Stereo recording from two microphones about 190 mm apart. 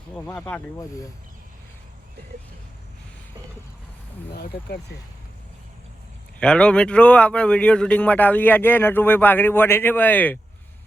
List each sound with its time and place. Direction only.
0.3 s speech: 10° left (ahead or behind)
4.3 s speech: 55° left (ahead or behind)
6.4 s speech: 5° left (ahead or behind)